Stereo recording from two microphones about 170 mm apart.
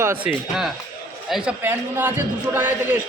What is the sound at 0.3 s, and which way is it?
A man's voice, 5° right (ahead or behind).